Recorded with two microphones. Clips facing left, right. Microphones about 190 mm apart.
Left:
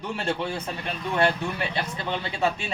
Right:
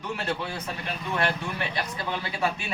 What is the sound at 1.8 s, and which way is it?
Speech, 25° left (ahead or behind).